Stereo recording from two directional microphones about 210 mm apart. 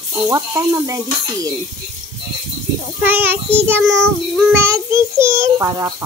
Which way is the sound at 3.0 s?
10° right (ahead or behind).